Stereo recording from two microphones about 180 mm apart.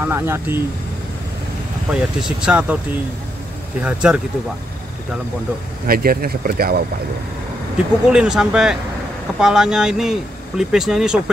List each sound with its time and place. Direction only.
0.0 s speech: 15° right (ahead or behind)
1.9 s speech: 5° right (ahead or behind)
3.8 s speech: 5° right (ahead or behind)
5.9 s speech: 55° right (ahead or behind)
7.7 s speech: 5° right (ahead or behind)